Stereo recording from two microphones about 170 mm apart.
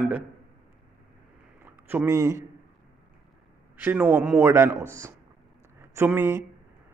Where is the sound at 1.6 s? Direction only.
15° right (ahead or behind).